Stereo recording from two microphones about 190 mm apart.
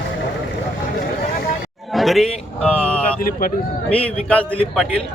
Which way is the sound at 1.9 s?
Centre (ahead or behind).